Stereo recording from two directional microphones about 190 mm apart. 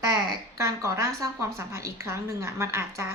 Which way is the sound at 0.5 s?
15° right (ahead or behind).